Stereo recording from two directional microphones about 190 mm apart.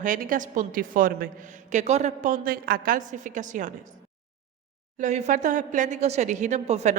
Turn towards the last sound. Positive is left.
turn(degrees=-35)  # may be behind; listen again after turning